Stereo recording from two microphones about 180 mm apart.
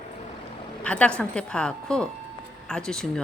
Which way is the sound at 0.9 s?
5° left (ahead or behind).